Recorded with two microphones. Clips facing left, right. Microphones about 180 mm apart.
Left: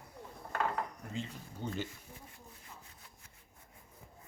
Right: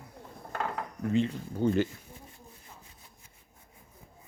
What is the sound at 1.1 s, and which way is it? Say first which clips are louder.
Speech: right 14 dB; 70° right (ahead or behind).